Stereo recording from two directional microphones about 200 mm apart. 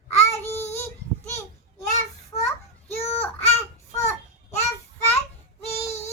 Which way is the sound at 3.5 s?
15° left (ahead or behind).